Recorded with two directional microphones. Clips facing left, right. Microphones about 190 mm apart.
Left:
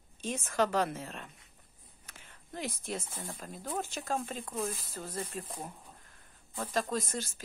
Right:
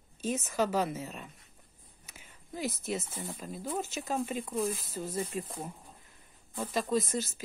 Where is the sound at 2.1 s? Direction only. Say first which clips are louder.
Right 2 dB; 10° right (ahead or behind).